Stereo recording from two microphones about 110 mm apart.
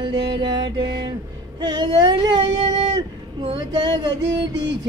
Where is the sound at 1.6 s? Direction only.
40° right (ahead or behind).